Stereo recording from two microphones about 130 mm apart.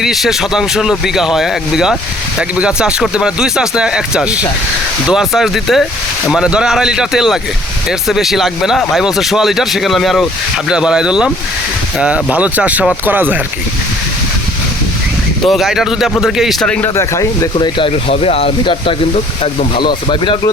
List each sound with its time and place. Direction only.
0.0 s speech: centre (ahead or behind)
15.4 s speech: centre (ahead or behind)
16.9 s speech: 25° left (ahead or behind)
17.7 s speech: 45° left (ahead or behind)